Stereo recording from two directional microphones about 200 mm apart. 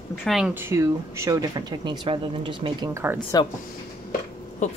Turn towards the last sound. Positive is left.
turn(degrees=40)  # may be behind; listen again after turning